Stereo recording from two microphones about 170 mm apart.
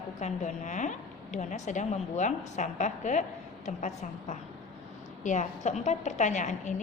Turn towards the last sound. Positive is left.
turn(degrees=45)  # may be behind; listen again after turning